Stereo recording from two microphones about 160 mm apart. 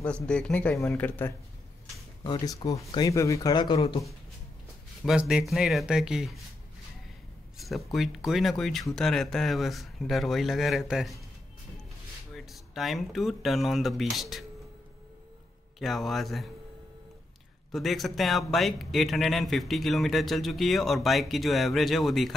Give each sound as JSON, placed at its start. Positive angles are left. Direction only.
{"t": 0.0, "sound": "speech", "side_deg": 5}
{"t": 2.2, "sound": "speech", "side_deg": 25}
{"t": 5.0, "sound": "speech", "side_deg": -5}
{"t": 7.5, "sound": "speech", "side_deg": 0}
{"t": 12.4, "sound": "speech", "side_deg": 0}
{"t": 15.8, "sound": "speech", "side_deg": 0}
{"t": 17.6, "sound": "speech", "side_deg": 0}